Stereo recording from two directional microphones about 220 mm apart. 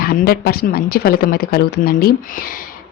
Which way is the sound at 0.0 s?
45° left (ahead or behind).